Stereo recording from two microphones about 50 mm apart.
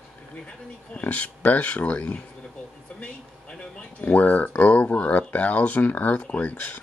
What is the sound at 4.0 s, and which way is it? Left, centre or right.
Speech, left.